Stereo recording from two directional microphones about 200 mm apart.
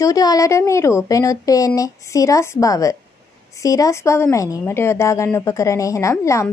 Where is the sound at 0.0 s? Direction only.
20° left (ahead or behind).